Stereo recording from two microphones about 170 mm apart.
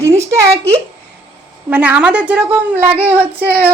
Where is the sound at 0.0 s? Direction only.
15° right (ahead or behind).